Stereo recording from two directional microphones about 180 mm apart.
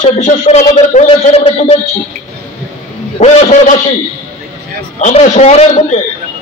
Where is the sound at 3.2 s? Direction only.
40° left (ahead or behind).